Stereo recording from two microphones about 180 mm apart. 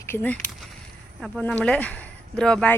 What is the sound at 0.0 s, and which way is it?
Speech, 10° left (ahead or behind).